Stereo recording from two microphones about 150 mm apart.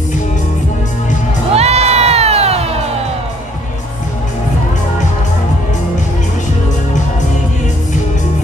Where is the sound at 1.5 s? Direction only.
45° right (ahead or behind).